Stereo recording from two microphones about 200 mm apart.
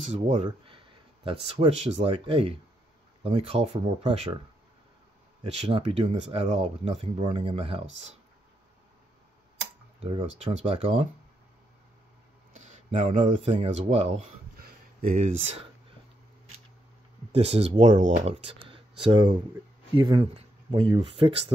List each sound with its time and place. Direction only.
0.4 s speech: 25° right (ahead or behind)
5.4 s speech: 25° right (ahead or behind)
10.4 s speech: 35° right (ahead or behind)
12.5 s speech: 35° right (ahead or behind)
14.6 s a sound: 50° right (ahead or behind)
17.3 s speech: 30° right (ahead or behind)